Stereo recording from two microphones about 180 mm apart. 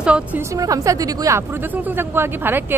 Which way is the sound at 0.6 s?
20° right (ahead or behind).